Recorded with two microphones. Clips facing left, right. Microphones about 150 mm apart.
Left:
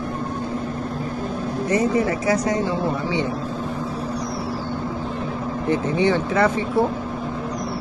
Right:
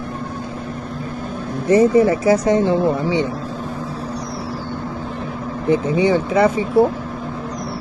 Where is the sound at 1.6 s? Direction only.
30° right (ahead or behind).